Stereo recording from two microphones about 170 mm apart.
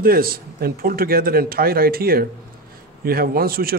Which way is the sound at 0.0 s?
60° right (ahead or behind).